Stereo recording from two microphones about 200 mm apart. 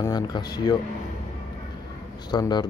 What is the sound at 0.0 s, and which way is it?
Speech, 20° left (ahead or behind).